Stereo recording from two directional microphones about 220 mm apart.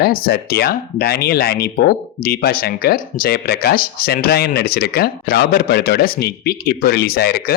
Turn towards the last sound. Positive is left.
turn(degrees=45)  # may be behind; listen again after turning